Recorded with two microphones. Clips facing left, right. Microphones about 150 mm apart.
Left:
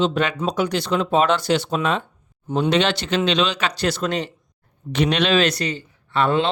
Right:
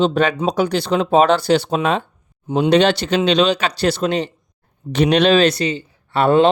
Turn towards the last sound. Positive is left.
turn(degrees=-40)  # may be behind; listen again after turning